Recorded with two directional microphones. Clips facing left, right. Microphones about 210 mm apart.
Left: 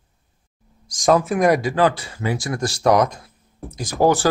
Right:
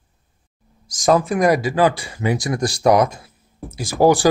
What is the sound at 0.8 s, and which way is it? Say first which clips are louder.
Speech: even; 5° right (ahead or behind).